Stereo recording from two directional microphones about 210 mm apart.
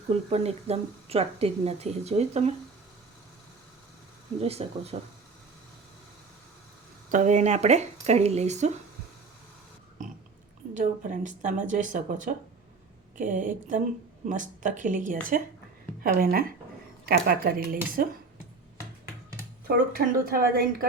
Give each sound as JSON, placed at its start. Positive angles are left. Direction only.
{"t": 0.1, "sound": "speech", "side_deg": -30}
{"t": 4.4, "sound": "speech", "side_deg": -30}
{"t": 7.1, "sound": "speech", "side_deg": -35}
{"t": 10.8, "sound": "a woman's voice", "side_deg": -40}
{"t": 19.6, "sound": "a woman's voice", "side_deg": -45}